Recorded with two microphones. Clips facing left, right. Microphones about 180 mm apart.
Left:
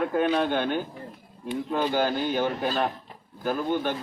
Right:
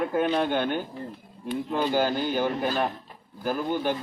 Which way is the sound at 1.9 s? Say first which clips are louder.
Right 1 dB; 10° right (ahead or behind).